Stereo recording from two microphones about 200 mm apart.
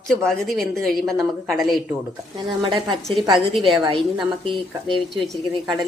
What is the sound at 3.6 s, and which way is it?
Speech, 25° right (ahead or behind).